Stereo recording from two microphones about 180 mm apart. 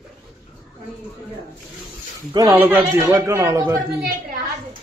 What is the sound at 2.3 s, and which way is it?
A man's voice, 15° right (ahead or behind).